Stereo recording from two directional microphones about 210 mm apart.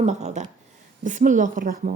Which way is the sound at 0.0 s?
30° right (ahead or behind).